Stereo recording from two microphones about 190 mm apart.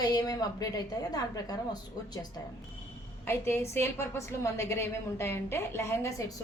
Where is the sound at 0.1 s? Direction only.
20° left (ahead or behind).